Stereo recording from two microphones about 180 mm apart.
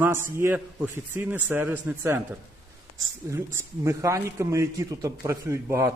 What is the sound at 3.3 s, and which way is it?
A man's voice, 15° right (ahead or behind).